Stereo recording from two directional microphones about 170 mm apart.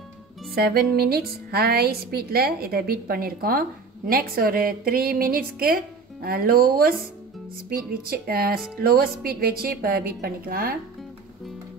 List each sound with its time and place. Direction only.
0.6 s a woman's voice: 65° right (ahead or behind)